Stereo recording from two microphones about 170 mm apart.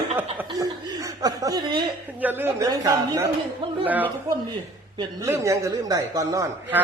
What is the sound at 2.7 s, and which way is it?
Speech, 25° right (ahead or behind).